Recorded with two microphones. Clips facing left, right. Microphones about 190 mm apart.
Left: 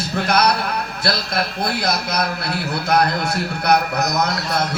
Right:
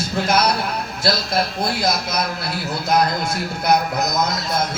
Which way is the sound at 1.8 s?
60° left (ahead or behind).